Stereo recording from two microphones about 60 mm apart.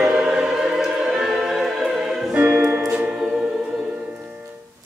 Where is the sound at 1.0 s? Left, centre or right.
Centre.